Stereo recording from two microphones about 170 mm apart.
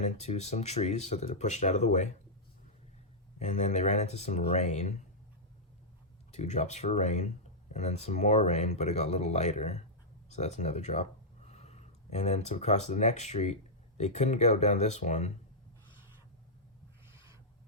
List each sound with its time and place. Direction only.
0.0 s speech: 40° left (ahead or behind)
3.3 s speech: 45° left (ahead or behind)
6.3 s speech: 45° left (ahead or behind)
17.1 s owl: 20° right (ahead or behind)